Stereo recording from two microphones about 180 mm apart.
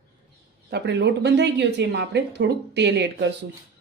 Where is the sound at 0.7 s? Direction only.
70° right (ahead or behind).